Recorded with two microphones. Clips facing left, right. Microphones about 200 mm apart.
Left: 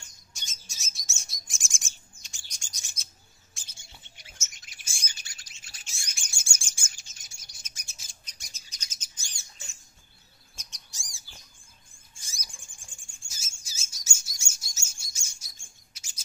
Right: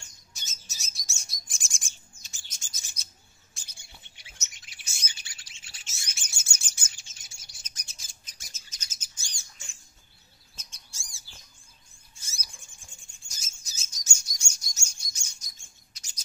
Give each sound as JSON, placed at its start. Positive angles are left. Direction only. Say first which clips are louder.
{"t": 0.3, "sound": "bird", "louder": "left 1 dB", "side_deg": -5}
{"t": 4.6, "sound": "bird", "louder": "even", "side_deg": 45}
{"t": 5.9, "sound": "bird", "louder": "even", "side_deg": 15}
{"t": 6.9, "sound": "bird", "louder": "even", "side_deg": 40}
{"t": 7.6, "sound": "bird", "louder": "even", "side_deg": 10}
{"t": 10.5, "sound": "bird", "louder": "even", "side_deg": 15}
{"t": 12.4, "sound": "bird", "louder": "even", "side_deg": 50}
{"t": 13.7, "sound": "bird", "louder": "right 1 dB", "side_deg": 10}
{"t": 15.9, "sound": "chirp", "louder": "even", "side_deg": 5}